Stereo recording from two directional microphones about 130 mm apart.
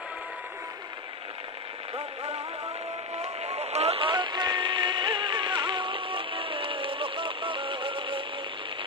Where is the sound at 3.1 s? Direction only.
55° right (ahead or behind).